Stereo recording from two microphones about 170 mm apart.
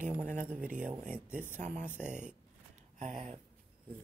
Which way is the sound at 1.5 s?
45° right (ahead or behind).